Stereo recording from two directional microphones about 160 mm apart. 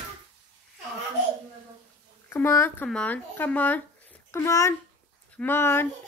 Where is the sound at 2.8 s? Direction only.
10° left (ahead or behind).